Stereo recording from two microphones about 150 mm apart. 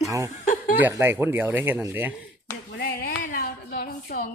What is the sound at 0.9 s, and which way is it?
A man's voice, 15° right (ahead or behind).